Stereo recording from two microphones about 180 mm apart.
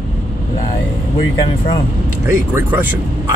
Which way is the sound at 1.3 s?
30° left (ahead or behind).